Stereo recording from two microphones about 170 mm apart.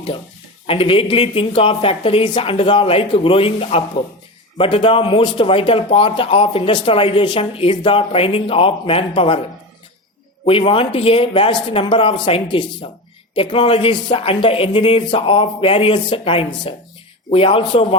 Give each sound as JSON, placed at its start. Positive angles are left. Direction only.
{"t": 0.7, "sound": "speech", "side_deg": 30}
{"t": 10.7, "sound": "speech", "side_deg": 30}